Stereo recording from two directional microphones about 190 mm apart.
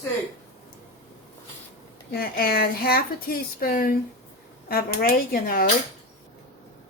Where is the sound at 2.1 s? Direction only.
50° left (ahead or behind).